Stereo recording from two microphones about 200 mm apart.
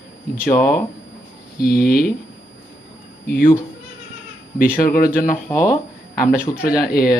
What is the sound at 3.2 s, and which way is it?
Speech, 45° left (ahead or behind).